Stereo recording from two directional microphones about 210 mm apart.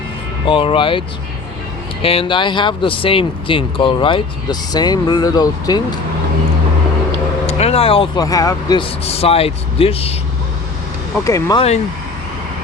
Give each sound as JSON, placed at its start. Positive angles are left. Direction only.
{"t": 0.4, "sound": "speech", "side_deg": 25}
{"t": 7.4, "sound": "speech", "side_deg": 30}
{"t": 11.2, "sound": "speech", "side_deg": 15}